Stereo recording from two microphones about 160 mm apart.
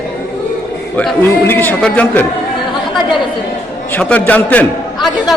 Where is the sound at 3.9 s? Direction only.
10° left (ahead or behind).